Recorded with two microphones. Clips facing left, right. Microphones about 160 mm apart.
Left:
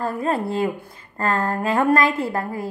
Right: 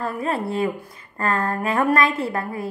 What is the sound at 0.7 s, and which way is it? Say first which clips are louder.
Speech: even; 30° left (ahead or behind).